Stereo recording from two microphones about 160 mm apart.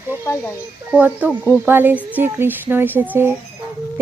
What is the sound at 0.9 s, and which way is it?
Speech, 10° right (ahead or behind).